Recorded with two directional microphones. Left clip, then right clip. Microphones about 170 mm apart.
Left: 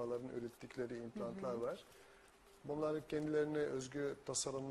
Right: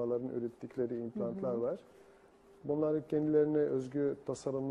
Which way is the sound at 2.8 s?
5° left (ahead or behind).